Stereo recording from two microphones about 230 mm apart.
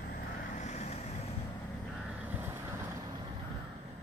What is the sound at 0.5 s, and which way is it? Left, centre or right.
Vehicle, left.